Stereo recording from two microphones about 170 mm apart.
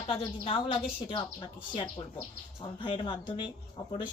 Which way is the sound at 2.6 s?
30° left (ahead or behind).